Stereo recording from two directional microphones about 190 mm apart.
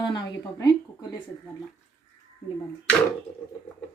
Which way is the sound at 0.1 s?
20° left (ahead or behind).